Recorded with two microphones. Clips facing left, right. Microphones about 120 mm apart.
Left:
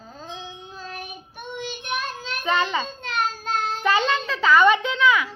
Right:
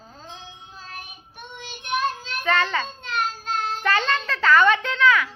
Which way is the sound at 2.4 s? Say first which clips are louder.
Even; 15° left (ahead or behind).